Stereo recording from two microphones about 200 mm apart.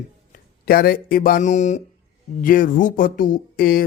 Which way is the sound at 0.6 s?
50° left (ahead or behind).